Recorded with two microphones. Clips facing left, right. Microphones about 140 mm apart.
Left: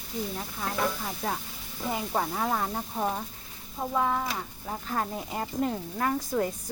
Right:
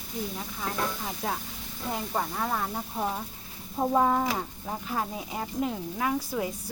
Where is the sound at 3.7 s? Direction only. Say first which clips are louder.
Right 4 dB; 25° right (ahead or behind).